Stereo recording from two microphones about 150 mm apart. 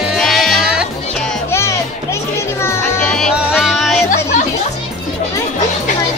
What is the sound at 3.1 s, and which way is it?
Music, centre (ahead or behind).